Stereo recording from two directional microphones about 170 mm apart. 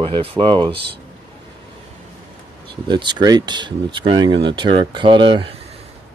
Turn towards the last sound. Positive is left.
turn(degrees=-30)  # may be behind; listen again after turning